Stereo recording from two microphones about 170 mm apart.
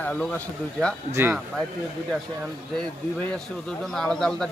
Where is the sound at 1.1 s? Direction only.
15° right (ahead or behind).